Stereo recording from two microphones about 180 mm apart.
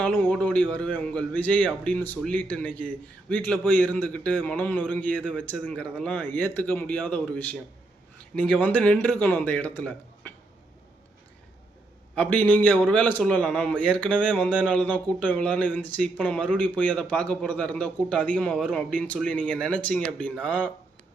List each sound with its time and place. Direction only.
0.0 s speech: 10° left (ahead or behind)
12.1 s speech: 5° left (ahead or behind)